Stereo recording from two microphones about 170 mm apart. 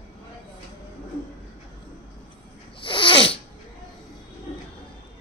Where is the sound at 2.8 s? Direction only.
30° left (ahead or behind).